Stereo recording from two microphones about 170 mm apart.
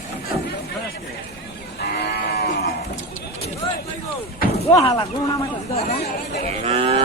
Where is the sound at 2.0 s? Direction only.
70° left (ahead or behind).